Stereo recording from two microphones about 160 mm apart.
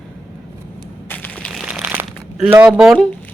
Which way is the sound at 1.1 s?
10° left (ahead or behind).